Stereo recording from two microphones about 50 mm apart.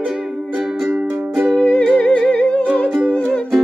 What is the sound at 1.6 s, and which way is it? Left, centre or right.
Music, left.